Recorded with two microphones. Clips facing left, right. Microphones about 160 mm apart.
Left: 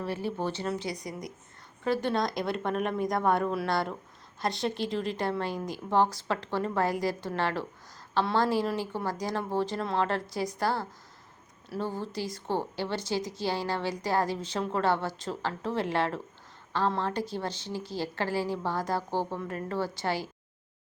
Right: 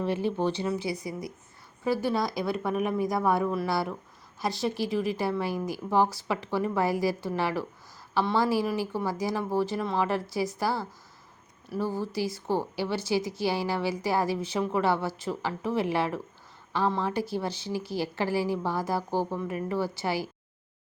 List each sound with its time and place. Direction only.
0.0 s a woman's voice: 20° right (ahead or behind)